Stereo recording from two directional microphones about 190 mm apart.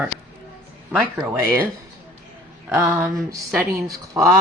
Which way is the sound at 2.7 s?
10° right (ahead or behind).